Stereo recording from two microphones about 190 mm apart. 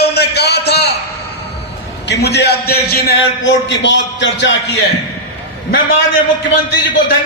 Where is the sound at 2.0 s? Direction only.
65° left (ahead or behind).